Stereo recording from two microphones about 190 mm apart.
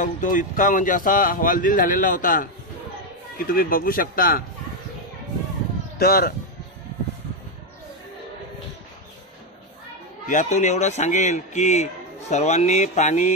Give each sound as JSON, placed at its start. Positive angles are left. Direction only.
{"t": 0.0, "sound": "speech", "side_deg": 45}
{"t": 5.9, "sound": "speech", "side_deg": 50}
{"t": 10.2, "sound": "speech", "side_deg": 40}